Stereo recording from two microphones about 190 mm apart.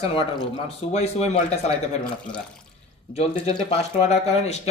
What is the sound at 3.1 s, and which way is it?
Speech, 30° left (ahead or behind).